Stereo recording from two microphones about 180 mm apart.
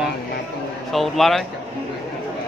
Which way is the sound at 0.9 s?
Centre (ahead or behind).